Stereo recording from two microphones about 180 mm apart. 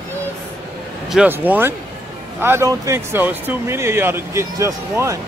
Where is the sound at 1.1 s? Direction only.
10° right (ahead or behind).